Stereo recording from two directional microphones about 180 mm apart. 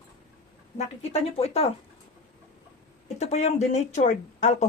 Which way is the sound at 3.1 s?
40° left (ahead or behind).